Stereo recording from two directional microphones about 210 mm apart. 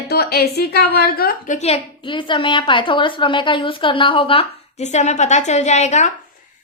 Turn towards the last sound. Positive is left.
turn(degrees=35)  # may be behind; listen again after turning